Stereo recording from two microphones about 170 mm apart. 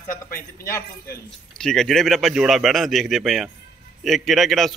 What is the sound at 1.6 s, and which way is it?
A man's voice, centre (ahead or behind).